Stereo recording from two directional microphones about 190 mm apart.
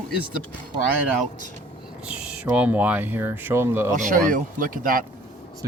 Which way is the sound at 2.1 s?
5° right (ahead or behind).